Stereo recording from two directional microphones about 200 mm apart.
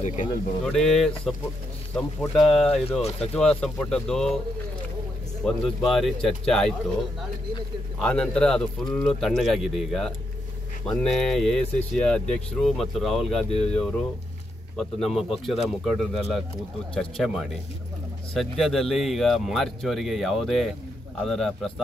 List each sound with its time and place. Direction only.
0.0 s speech: 35° left (ahead or behind)
0.7 s speech: centre (ahead or behind)
3.0 s speech: 30° left (ahead or behind)
3.3 s speech: 5° left (ahead or behind)
5.4 s speech: centre (ahead or behind)
8.0 s speech: 5° left (ahead or behind)